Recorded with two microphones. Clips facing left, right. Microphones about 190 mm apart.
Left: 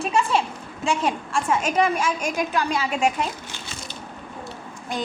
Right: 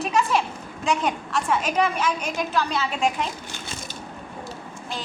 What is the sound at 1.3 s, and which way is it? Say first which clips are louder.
A woman's voice: left 1 dB; 10° left (ahead or behind).